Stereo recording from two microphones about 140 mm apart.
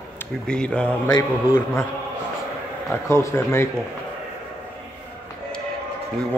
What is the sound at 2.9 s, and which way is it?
Speech, 20° left (ahead or behind).